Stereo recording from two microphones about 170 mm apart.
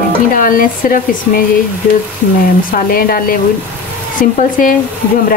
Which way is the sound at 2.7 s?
60° left (ahead or behind).